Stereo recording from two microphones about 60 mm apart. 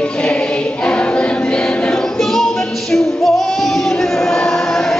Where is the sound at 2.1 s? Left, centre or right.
Centre.